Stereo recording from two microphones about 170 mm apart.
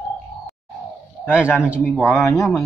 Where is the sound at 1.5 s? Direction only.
5° right (ahead or behind).